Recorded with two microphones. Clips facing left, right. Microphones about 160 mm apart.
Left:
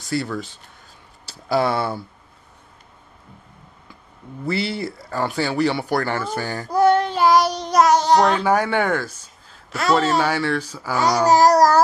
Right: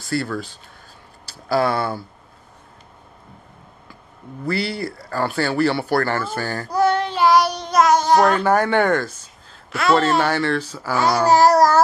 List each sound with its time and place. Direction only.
0.0 s speech: 20° left (ahead or behind)
4.5 s speech: 20° left (ahead or behind)
6.7 s child singing: 50° left (ahead or behind)
8.0 s a child's voice: 5° right (ahead or behind)
8.5 s speech: 10° left (ahead or behind)
9.7 s speech: 40° left (ahead or behind)
9.9 s speech: 10° left (ahead or behind)
11.3 s babbling: 40° left (ahead or behind)